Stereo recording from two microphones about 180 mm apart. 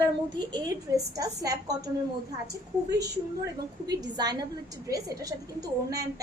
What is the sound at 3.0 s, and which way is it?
A woman's voice, 20° right (ahead or behind).